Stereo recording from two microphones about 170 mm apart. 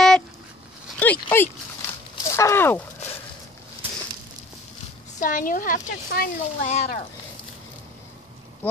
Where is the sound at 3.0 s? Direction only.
40° left (ahead or behind).